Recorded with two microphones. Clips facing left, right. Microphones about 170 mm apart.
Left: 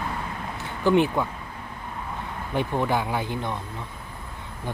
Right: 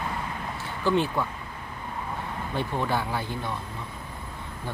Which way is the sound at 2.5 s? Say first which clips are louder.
Left 4 dB; 15° left (ahead or behind).